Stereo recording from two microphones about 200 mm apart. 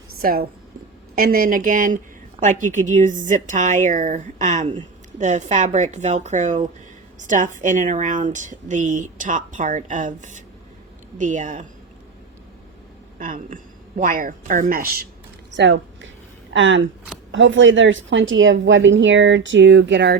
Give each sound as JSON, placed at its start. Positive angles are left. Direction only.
{"t": 0.2, "sound": "speech", "side_deg": -45}
{"t": 13.1, "sound": "speech", "side_deg": -40}
{"t": 15.5, "sound": "a woman's voice", "side_deg": -65}